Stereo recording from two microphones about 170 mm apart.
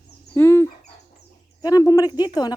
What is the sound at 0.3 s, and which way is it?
Dog, 15° left (ahead or behind).